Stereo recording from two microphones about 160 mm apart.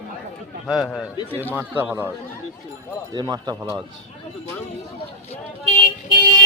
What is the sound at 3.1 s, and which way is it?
Speech, 25° right (ahead or behind).